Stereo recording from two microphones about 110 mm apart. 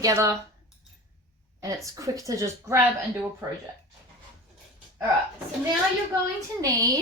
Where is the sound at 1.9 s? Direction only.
30° right (ahead or behind).